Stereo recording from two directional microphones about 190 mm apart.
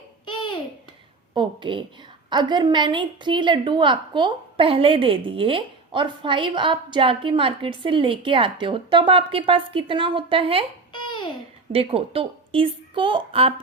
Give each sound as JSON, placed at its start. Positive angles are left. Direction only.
{"t": 1.3, "sound": "a sound", "side_deg": -25}
{"t": 2.3, "sound": "a woman's voice", "side_deg": -25}
{"t": 10.9, "sound": "babbling", "side_deg": 25}
{"t": 11.7, "sound": "a woman's voice", "side_deg": -30}